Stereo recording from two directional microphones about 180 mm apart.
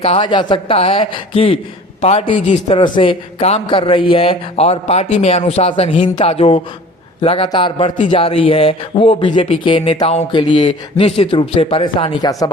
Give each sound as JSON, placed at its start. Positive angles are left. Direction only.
{"t": 0.0, "sound": "a man's voice", "side_deg": 30}